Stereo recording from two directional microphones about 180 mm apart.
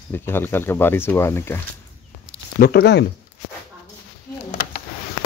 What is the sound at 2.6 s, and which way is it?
Speech, 65° left (ahead or behind).